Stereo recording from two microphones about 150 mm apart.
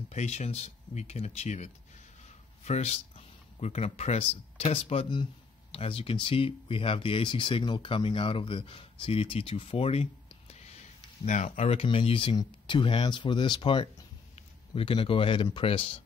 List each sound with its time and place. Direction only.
0.1 s speech: 50° left (ahead or behind)
11.2 s speech: 55° left (ahead or behind); by 16.0 s 40° left (ahead or behind)